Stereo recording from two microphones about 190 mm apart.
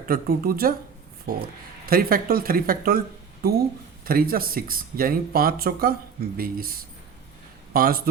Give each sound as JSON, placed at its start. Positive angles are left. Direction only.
{"t": 0.1, "sound": "speech", "side_deg": -50}
{"t": 4.0, "sound": "speech", "side_deg": -50}